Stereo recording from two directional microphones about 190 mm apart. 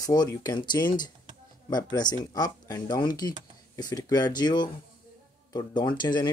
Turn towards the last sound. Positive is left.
turn(degrees=25)  # may be behind; listen again after turning